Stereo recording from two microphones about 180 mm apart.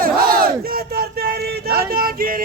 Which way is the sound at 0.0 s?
55° right (ahead or behind).